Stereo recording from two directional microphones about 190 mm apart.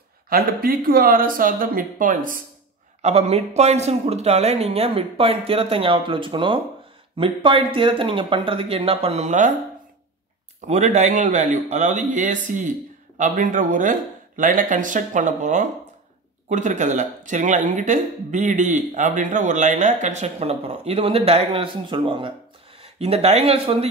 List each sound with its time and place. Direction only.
0.3 s speech: 50° right (ahead or behind)
3.0 s speech: 35° right (ahead or behind)
10.7 s speech: 35° right (ahead or behind)